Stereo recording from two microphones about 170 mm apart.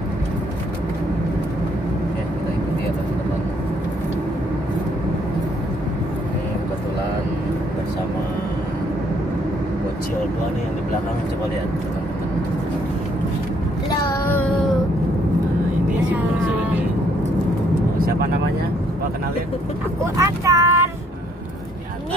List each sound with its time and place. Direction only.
20.2 s vehicle: 20° right (ahead or behind)